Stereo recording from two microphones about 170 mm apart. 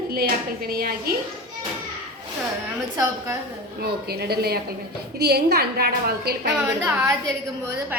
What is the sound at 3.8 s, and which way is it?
A woman's voice, 65° right (ahead or behind).